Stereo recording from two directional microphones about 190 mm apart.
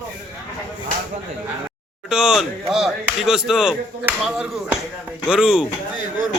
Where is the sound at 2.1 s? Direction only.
5° right (ahead or behind).